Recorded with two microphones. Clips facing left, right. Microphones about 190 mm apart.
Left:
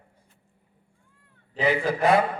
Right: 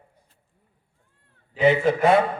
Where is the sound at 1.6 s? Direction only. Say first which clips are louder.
Right 5 dB; 25° right (ahead or behind).